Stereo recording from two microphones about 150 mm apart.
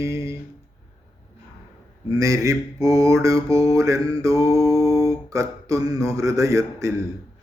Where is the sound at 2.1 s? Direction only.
20° right (ahead or behind).